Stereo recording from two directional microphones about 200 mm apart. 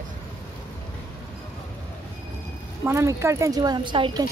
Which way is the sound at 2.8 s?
15° right (ahead or behind).